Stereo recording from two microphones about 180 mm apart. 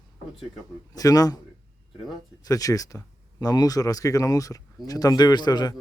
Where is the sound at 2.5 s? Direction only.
20° left (ahead or behind).